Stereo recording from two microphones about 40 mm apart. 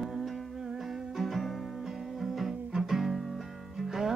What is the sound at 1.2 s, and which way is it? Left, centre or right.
Music, centre.